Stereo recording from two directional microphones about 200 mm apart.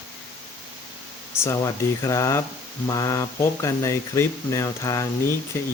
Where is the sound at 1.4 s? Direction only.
15° left (ahead or behind).